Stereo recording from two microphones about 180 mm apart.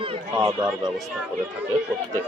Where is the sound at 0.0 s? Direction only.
25° right (ahead or behind).